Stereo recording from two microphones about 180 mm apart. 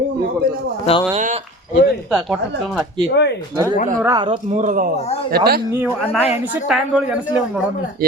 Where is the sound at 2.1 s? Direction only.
Centre (ahead or behind).